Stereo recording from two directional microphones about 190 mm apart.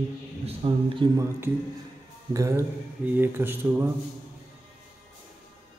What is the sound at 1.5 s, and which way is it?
Speech, 10° right (ahead or behind).